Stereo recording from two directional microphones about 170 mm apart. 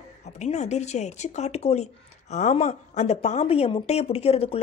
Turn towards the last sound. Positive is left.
turn(degrees=35)  # may be behind; listen again after turning